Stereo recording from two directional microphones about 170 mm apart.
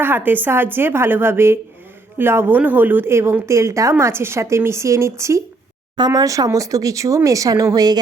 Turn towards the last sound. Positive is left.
turn(degrees=-20)  # may be behind; listen again after turning